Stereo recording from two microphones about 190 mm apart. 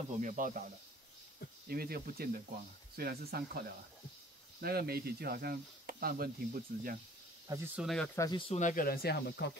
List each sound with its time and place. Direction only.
0.2 s speech: 45° right (ahead or behind)
1.7 s speech: 55° right (ahead or behind)
4.6 s speech: 55° right (ahead or behind)
7.4 s speech: 15° right (ahead or behind)
7.8 s speech: centre (ahead or behind)
8.2 s speech: 25° left (ahead or behind)
8.5 s speech: 45° left (ahead or behind)